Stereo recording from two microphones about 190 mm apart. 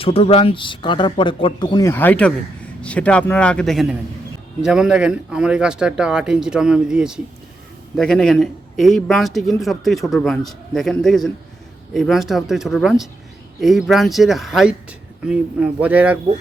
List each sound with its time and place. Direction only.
0.0 s a man's voice: 30° left (ahead or behind); by 16.1 s 10° right (ahead or behind)